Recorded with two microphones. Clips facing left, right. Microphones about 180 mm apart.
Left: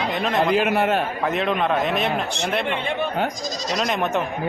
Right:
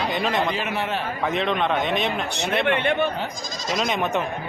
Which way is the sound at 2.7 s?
70° right (ahead or behind).